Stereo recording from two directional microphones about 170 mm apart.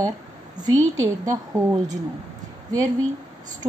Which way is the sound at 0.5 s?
20° right (ahead or behind).